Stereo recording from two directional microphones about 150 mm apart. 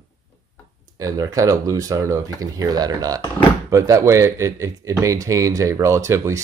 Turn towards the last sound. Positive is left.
turn(degrees=-20)  # may be behind; listen again after turning